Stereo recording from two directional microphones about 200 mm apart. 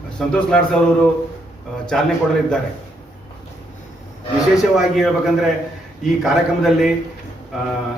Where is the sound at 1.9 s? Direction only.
5° left (ahead or behind).